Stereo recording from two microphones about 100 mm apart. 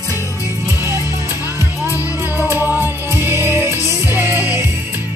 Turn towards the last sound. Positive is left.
turn(degrees=-25)  # may be behind; listen again after turning